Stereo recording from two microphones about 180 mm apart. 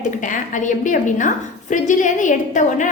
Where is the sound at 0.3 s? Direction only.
45° left (ahead or behind).